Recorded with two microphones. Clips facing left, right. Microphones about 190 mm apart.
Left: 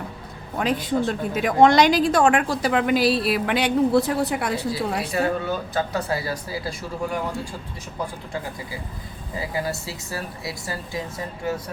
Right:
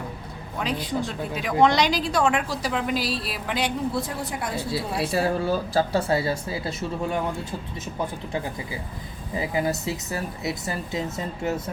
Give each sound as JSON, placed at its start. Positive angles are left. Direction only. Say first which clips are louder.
{"t": 0.6, "sound": "a woman's voice", "louder": "left 5 dB", "side_deg": 50}
{"t": 4.9, "sound": "speech", "louder": "even", "side_deg": -30}
{"t": 9.3, "sound": "speech", "louder": "right 2 dB", "side_deg": -20}